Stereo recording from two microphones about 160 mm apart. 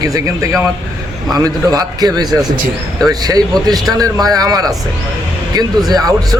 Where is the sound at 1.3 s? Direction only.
25° right (ahead or behind).